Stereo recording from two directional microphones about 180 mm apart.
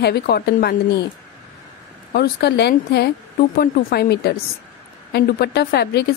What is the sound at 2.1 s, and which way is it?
Speech, 65° left (ahead or behind).